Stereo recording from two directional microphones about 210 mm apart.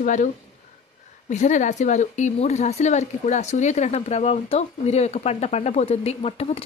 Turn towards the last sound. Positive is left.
turn(degrees=30)  # may be behind; listen again after turning